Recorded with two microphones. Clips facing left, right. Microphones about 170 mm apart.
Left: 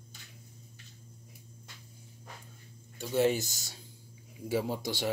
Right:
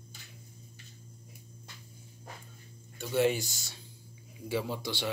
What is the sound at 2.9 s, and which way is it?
A man's voice, 40° left (ahead or behind).